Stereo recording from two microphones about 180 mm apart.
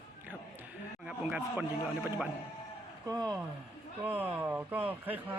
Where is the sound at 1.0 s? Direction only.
10° right (ahead or behind).